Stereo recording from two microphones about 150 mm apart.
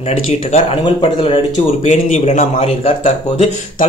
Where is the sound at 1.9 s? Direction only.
50° left (ahead or behind).